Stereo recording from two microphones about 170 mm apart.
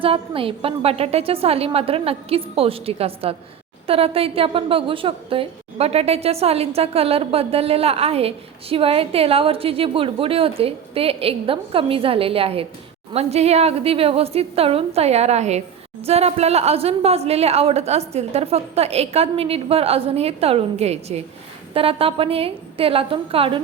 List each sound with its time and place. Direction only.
0.0 s a woman's voice: 30° right (ahead or behind)